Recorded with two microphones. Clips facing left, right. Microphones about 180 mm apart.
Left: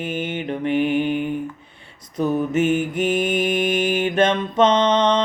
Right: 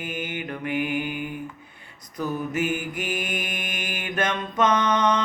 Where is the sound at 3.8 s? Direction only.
30° left (ahead or behind).